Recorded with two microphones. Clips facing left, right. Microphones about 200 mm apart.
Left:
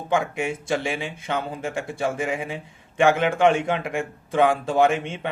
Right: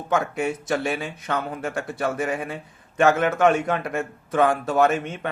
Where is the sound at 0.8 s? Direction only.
25° left (ahead or behind).